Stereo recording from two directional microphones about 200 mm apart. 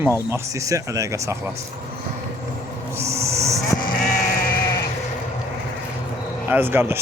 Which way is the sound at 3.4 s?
15° right (ahead or behind).